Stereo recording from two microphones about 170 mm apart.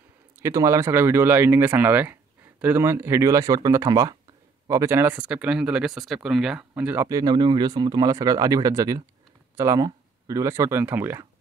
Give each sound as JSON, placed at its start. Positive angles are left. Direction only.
{"t": 0.4, "sound": "speech", "side_deg": -20}